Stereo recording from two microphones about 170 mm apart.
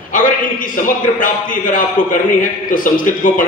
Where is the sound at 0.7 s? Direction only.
50° left (ahead or behind).